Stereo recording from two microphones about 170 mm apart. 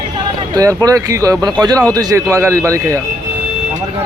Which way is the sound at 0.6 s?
20° right (ahead or behind).